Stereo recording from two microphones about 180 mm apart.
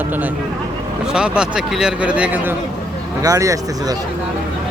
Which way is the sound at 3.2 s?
20° right (ahead or behind).